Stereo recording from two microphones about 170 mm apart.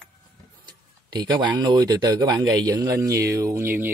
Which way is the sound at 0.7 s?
25° right (ahead or behind).